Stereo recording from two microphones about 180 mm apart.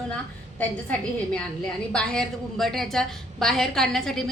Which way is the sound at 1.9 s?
5° left (ahead or behind).